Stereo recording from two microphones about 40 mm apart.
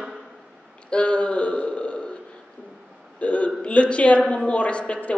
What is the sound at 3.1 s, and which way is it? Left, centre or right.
A man's voice, left.